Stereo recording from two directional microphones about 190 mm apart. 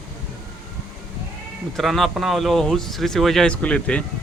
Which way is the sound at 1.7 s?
Centre (ahead or behind).